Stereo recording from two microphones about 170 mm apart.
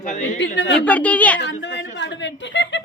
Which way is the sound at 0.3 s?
90° left.